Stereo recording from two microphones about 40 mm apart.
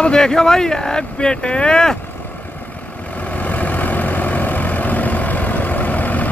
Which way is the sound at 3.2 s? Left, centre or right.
Left.